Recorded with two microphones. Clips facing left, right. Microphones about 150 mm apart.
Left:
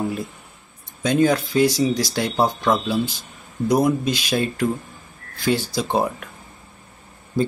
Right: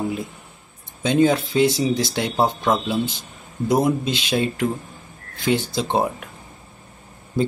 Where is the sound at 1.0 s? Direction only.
25° right (ahead or behind).